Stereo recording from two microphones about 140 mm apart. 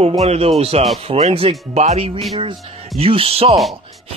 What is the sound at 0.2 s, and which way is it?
Speech, 45° right (ahead or behind).